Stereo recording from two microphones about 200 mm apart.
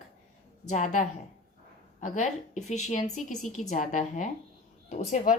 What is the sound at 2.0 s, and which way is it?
A woman's voice, 35° left (ahead or behind).